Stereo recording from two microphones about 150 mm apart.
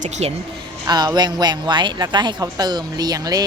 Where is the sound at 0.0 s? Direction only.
45° right (ahead or behind).